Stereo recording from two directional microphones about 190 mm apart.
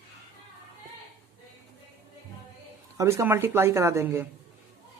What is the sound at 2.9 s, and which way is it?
Speech, 15° right (ahead or behind).